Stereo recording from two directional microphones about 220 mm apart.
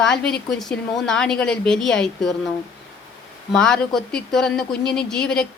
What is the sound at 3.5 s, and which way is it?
A woman's voice, 5° left (ahead or behind).